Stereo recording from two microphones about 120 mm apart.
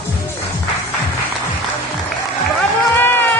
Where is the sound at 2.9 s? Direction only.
15° left (ahead or behind).